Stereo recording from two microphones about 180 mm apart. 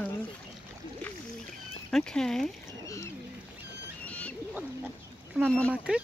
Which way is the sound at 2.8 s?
15° left (ahead or behind).